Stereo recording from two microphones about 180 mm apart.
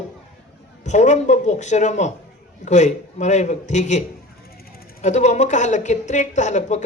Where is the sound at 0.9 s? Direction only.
40° left (ahead or behind).